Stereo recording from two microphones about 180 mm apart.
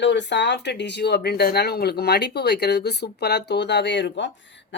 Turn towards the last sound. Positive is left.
turn(degrees=75)  # may be behind; listen again after turning